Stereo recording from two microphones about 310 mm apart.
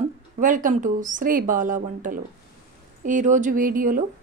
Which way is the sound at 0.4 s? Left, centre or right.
Right.